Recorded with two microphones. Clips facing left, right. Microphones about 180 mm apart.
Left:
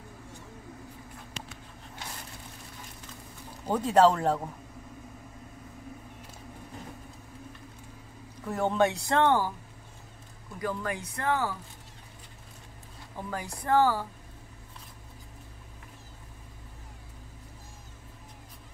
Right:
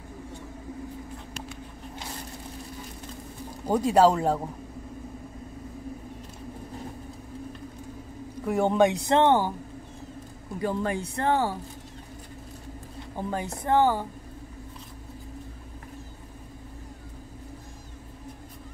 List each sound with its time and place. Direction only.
3.6 s speech: 10° right (ahead or behind)
8.5 s speech: 10° right (ahead or behind)
10.6 s speech: 30° right (ahead or behind)
13.1 s speech: 25° right (ahead or behind)